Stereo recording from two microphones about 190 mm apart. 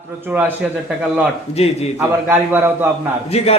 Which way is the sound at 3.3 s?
35° left (ahead or behind).